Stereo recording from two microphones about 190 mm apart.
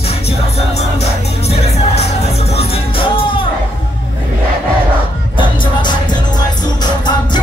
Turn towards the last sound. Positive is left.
turn(degrees=25)  # may be behind; listen again after turning